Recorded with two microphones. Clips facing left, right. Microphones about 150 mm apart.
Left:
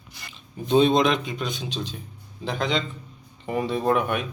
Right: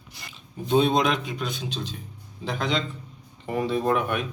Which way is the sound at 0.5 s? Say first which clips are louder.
Left 2 dB; 5° right (ahead or behind).